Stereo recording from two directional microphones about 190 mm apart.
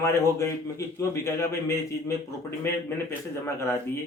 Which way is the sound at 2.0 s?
15° left (ahead or behind).